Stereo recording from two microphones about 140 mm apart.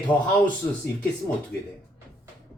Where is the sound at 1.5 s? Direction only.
10° left (ahead or behind).